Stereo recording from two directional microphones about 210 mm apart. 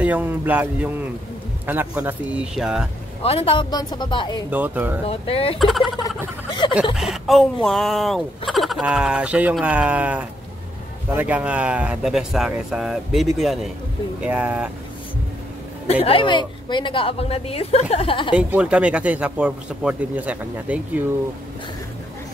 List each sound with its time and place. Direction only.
0.0 s speech: 5° right (ahead or behind)
3.2 s a woman's voice: 25° left (ahead or behind)
4.5 s speech: 10° right (ahead or behind)
5.0 s a woman's voice: 25° left (ahead or behind)
5.6 s speech: centre (ahead or behind)
5.9 s a sound: 20° left (ahead or behind)
7.0 s speech: centre (ahead or behind)
15.9 s a woman's voice: 25° left (ahead or behind)
18.3 s speech: 5° right (ahead or behind)